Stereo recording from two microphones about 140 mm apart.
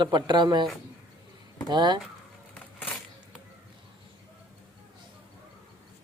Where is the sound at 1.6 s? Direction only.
30° right (ahead or behind).